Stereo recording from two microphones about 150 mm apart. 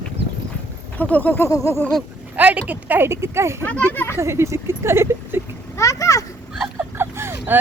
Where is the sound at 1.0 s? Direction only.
10° left (ahead or behind).